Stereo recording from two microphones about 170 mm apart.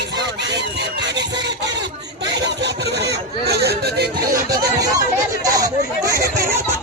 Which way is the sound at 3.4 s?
70° right (ahead or behind).